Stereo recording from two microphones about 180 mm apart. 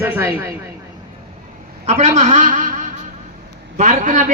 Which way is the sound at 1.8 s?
40° right (ahead or behind).